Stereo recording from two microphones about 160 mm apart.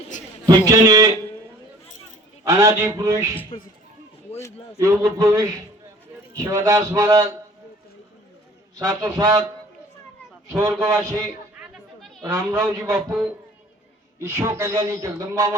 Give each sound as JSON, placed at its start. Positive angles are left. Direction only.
{"t": 0.4, "sound": "a man's voice", "side_deg": -20}
{"t": 2.4, "sound": "a man's voice", "side_deg": -20}
{"t": 3.5, "sound": "speech", "side_deg": 35}
{"t": 5.1, "sound": "a man's voice", "side_deg": -20}
{"t": 8.9, "sound": "a man's voice", "side_deg": -25}
{"t": 10.7, "sound": "speech", "side_deg": -15}
{"t": 12.2, "sound": "a man's voice", "side_deg": -20}
{"t": 12.6, "sound": "a man's voice", "side_deg": -5}
{"t": 14.2, "sound": "a man's voice", "side_deg": -20}